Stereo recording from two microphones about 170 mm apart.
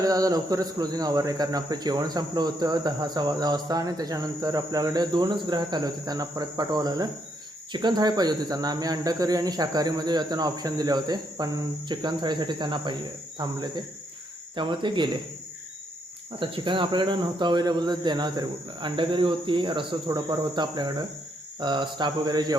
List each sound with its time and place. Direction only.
0.0 s speech: 20° right (ahead or behind)
16.4 s speech: 30° right (ahead or behind)